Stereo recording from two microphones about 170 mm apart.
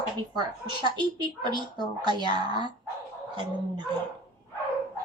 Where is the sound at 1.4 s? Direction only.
25° right (ahead or behind).